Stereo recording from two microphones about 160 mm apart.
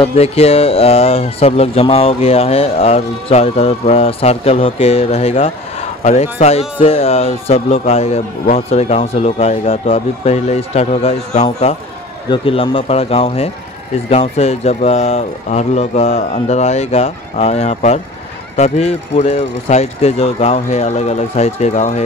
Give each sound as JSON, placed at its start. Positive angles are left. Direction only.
{"t": 0.0, "sound": "speech", "side_deg": 40}